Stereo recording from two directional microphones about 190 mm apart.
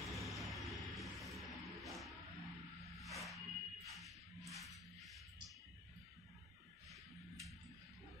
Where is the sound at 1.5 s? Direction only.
Centre (ahead or behind).